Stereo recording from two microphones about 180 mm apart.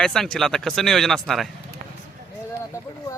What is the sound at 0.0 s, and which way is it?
A man's voice, 5° left (ahead or behind).